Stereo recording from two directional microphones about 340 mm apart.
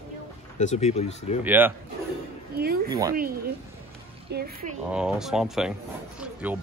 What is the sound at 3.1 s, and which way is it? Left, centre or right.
Speech, right.